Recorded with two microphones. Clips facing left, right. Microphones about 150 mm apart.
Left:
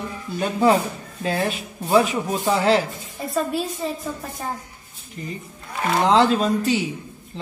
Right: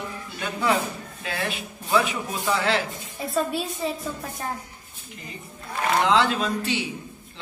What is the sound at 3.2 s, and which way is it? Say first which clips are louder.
A woman's voice: left 2 dB; centre (ahead or behind).